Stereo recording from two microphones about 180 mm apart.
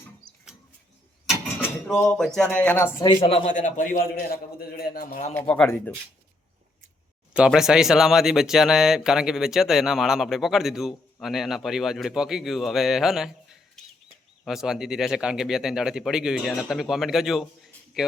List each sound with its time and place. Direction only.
1.3 s a sound: 5° left (ahead or behind)
2.1 s a man's voice: 5° left (ahead or behind); by 3.5 s 30° left (ahead or behind)
3.5 s a man's voice: 45° left (ahead or behind)
5.3 s a man's voice: 10° left (ahead or behind)
7.3 s speech: 5° right (ahead or behind)
14.4 s speech: centre (ahead or behind)